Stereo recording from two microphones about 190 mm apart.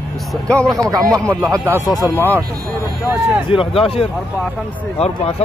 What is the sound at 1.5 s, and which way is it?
Speech, 10° right (ahead or behind).